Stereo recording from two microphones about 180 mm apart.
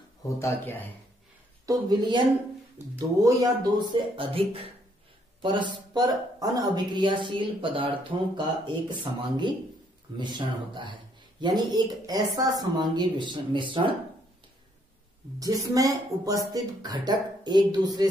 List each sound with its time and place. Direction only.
0.4 s speech: 10° left (ahead or behind)
1.7 s speech: 25° right (ahead or behind)
3.9 s speech: 30° right (ahead or behind)
15.3 s speech: 20° right (ahead or behind)